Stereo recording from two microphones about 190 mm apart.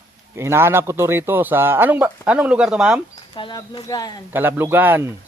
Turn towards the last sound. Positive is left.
turn(degrees=-10)  # may be behind; listen again after turning